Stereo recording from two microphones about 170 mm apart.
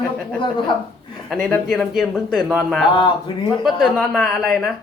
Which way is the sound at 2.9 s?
25° left (ahead or behind).